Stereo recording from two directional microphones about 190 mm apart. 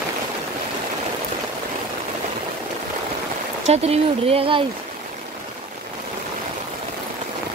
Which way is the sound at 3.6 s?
35° right (ahead or behind).